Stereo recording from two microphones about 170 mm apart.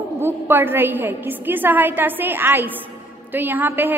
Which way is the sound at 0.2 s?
15° right (ahead or behind).